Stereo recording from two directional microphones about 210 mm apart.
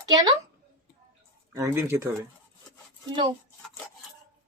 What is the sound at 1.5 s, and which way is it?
Speech, 15° right (ahead or behind).